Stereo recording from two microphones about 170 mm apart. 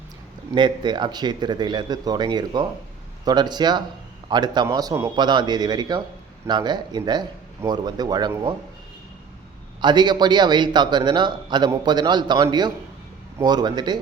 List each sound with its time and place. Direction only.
0.5 s a man's voice: 25° right (ahead or behind)
9.8 s a man's voice: 25° right (ahead or behind)